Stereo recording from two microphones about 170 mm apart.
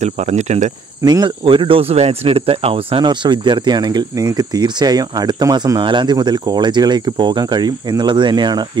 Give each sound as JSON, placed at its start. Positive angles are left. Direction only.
{"t": 0.0, "sound": "cricket", "side_deg": -40}
{"t": 1.0, "sound": "speech", "side_deg": -25}